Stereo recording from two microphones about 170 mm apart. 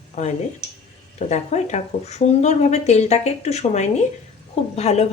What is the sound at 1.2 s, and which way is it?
Speech, 40° left (ahead or behind).